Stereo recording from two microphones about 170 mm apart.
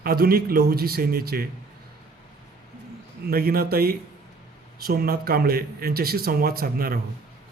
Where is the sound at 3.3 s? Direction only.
60° right (ahead or behind).